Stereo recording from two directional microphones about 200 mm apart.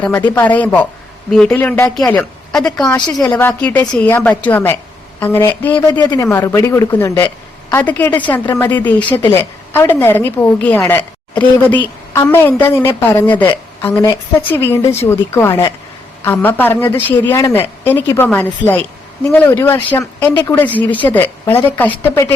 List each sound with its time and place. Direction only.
0.0 s a woman's voice: 10° left (ahead or behind)